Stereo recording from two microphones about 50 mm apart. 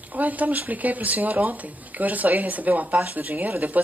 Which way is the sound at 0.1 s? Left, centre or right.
Right.